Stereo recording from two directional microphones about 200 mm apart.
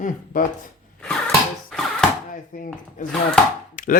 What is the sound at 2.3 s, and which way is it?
Speech, 40° left (ahead or behind).